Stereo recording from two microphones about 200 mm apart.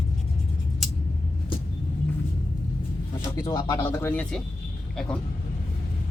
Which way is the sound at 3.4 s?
20° left (ahead or behind).